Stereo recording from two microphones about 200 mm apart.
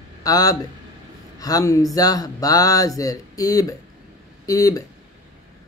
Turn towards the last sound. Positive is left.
turn(degrees=15)  # may be behind; listen again after turning